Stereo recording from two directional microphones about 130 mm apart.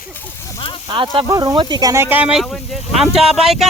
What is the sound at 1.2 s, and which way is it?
Speech, 30° right (ahead or behind).